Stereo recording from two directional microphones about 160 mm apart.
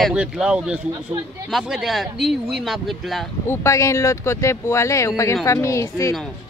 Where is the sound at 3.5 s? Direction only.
20° left (ahead or behind).